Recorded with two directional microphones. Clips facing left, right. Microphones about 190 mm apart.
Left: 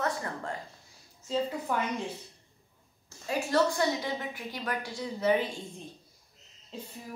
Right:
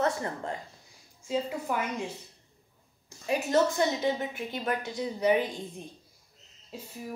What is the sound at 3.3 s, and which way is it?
A woman's voice, 20° right (ahead or behind).